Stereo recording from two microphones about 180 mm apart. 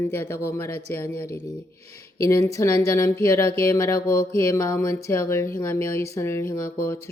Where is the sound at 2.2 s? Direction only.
15° left (ahead or behind).